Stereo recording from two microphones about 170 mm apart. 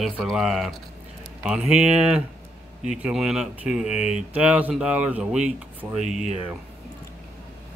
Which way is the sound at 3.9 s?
40° left (ahead or behind).